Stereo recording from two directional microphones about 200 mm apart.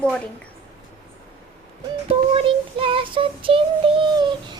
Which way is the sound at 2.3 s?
25° right (ahead or behind).